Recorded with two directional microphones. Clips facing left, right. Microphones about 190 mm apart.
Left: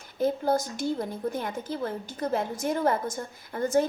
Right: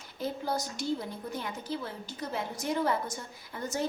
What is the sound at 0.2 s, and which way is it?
A woman's voice, 50° left (ahead or behind).